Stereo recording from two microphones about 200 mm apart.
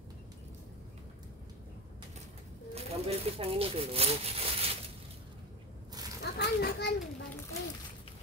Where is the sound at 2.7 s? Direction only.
30° right (ahead or behind).